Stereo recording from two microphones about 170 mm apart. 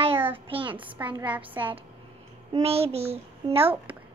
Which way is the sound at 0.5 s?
30° right (ahead or behind).